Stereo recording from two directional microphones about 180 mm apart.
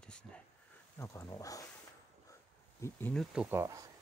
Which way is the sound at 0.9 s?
15° left (ahead or behind).